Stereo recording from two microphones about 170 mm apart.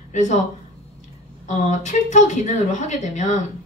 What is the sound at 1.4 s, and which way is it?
Speech, 45° left (ahead or behind).